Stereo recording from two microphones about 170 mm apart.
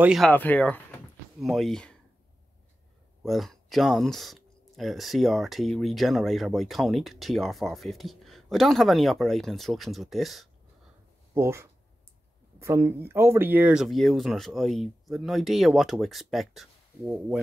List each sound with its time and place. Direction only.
0.0 s speech: 5° right (ahead or behind)
0.3 s speech: 10° left (ahead or behind)
3.3 s speech: centre (ahead or behind)
11.3 s speech: 15° right (ahead or behind)